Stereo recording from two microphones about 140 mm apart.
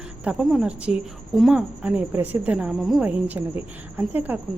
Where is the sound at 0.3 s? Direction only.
5° right (ahead or behind).